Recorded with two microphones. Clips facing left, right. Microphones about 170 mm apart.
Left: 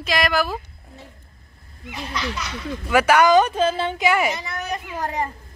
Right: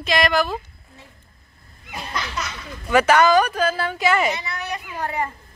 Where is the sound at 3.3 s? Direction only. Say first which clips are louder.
Left 2 dB; 25° left (ahead or behind).